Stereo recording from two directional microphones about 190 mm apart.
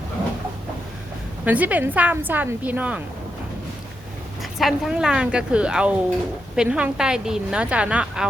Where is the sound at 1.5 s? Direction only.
10° right (ahead or behind).